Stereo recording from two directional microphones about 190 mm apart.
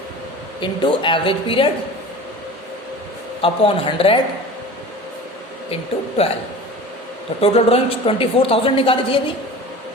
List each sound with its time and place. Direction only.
0.6 s a woman's voice: 25° left (ahead or behind)
3.4 s a woman's voice: 30° left (ahead or behind)
5.7 s speech: 30° left (ahead or behind)
7.4 s a woman's voice: 30° left (ahead or behind)